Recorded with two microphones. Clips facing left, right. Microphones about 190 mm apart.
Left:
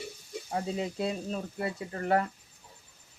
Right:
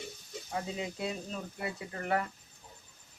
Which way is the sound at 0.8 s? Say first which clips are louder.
Left 5 dB; 30° left (ahead or behind).